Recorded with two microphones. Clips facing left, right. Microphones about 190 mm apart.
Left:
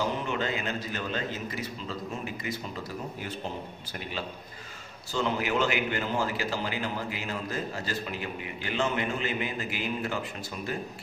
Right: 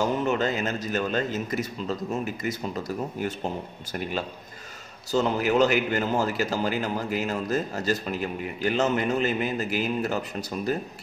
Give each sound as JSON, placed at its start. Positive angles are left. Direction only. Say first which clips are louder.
{"t": 0.0, "sound": "a man's voice", "louder": "right 6 dB", "side_deg": -45}
{"t": 5.1, "sound": "a man's voice", "louder": "right 6 dB", "side_deg": -40}